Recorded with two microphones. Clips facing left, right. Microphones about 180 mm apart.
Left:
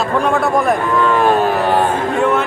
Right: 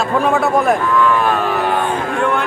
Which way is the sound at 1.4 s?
35° left (ahead or behind).